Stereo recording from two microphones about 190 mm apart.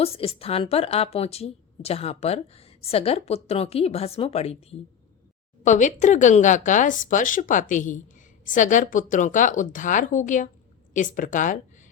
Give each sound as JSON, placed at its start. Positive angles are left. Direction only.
{"t": 0.0, "sound": "speech", "side_deg": 30}